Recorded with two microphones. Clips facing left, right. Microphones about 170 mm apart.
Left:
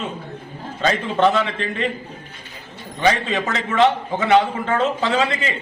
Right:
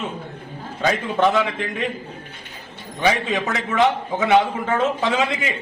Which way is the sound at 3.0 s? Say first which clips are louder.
Left 1 dB; 10° right (ahead or behind).